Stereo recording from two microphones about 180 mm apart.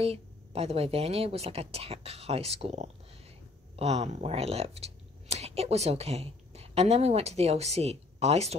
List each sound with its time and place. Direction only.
0.0 s speech: 35° right (ahead or behind)